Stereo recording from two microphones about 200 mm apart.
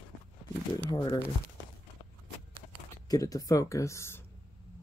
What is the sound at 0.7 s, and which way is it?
Speech, 20° left (ahead or behind).